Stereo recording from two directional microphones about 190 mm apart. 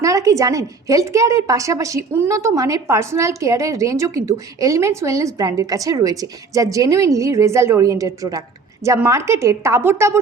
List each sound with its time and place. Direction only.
0.0 s a woman's voice: 15° right (ahead or behind)